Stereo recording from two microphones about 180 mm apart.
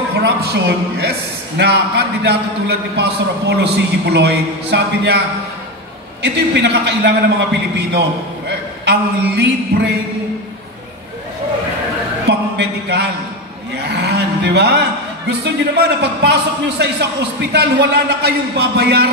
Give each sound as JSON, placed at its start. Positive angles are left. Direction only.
{"t": 0.2, "sound": "a man's voice", "side_deg": -65}
{"t": 6.2, "sound": "a man's voice", "side_deg": -70}
{"t": 12.3, "sound": "a sound", "side_deg": -65}
{"t": 13.9, "sound": "a man's voice", "side_deg": -70}